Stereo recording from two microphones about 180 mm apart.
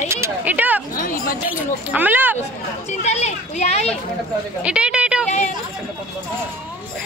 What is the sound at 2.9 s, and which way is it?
Speech, 40° left (ahead or behind).